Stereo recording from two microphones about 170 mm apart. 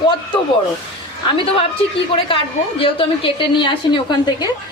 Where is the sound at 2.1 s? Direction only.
30° left (ahead or behind).